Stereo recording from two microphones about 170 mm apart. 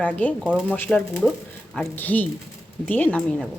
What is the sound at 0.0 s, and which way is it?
A woman's voice, 10° left (ahead or behind).